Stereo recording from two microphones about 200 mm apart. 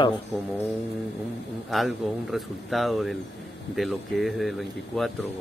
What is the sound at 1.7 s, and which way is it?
Speech, centre (ahead or behind).